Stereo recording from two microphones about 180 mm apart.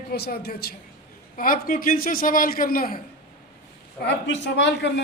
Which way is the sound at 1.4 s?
50° left (ahead or behind).